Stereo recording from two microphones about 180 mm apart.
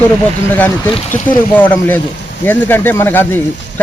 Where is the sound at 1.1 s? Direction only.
45° left (ahead or behind).